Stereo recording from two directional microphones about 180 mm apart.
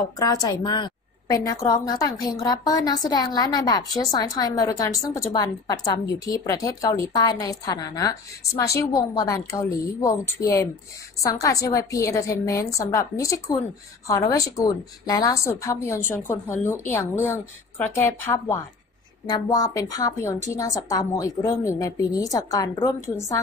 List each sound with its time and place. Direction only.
0.2 s a woman's voice: 20° left (ahead or behind)